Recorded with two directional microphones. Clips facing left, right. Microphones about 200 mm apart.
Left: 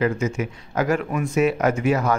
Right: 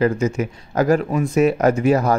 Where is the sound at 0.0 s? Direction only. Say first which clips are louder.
Right 4 dB; 35° right (ahead or behind).